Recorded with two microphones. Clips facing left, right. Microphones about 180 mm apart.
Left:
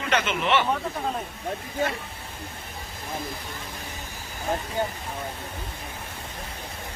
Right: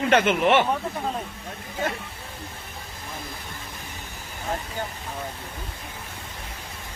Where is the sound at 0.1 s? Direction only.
50° right (ahead or behind).